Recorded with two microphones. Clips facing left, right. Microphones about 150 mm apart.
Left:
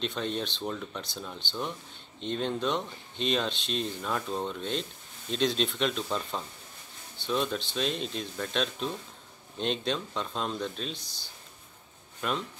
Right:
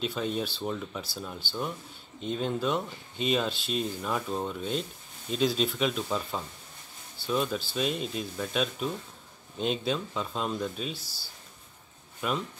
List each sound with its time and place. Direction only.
0.0 s speech: 5° right (ahead or behind)